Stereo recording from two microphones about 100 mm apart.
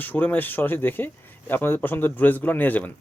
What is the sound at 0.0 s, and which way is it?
Speech, 15° left (ahead or behind).